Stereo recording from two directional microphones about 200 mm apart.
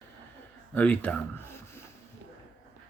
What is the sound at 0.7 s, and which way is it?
Speech, 5° left (ahead or behind).